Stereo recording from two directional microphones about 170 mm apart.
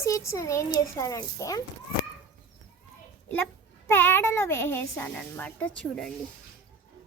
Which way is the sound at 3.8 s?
10° left (ahead or behind).